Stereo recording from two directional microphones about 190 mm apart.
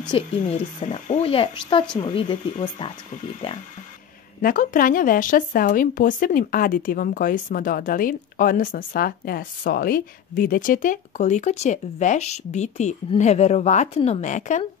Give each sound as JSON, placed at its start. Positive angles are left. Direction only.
{"t": 0.1, "sound": "speech", "side_deg": 30}
{"t": 4.4, "sound": "speech", "side_deg": 45}